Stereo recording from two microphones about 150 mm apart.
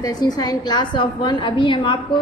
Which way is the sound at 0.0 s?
25° left (ahead or behind).